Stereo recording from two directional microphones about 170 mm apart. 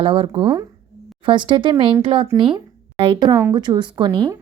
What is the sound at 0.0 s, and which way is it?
A woman's voice, 30° right (ahead or behind).